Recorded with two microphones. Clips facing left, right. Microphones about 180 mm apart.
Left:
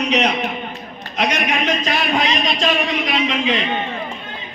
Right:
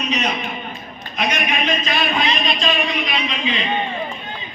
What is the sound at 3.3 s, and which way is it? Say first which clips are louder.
Speech: left 4 dB; 75° left (ahead or behind).